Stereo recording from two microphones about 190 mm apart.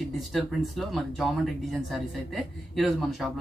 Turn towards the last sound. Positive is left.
turn(degrees=0)  # may be behind; listen again after turning